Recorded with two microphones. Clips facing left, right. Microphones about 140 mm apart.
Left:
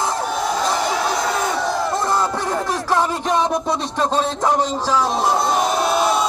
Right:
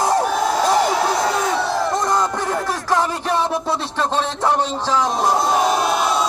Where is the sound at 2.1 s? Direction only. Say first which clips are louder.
Even; 10° left (ahead or behind).